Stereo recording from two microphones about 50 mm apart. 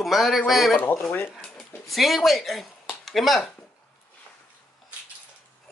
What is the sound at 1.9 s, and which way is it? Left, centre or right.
Speech, centre.